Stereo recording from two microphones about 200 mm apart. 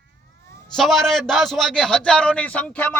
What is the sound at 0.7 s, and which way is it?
A man's voice, centre (ahead or behind).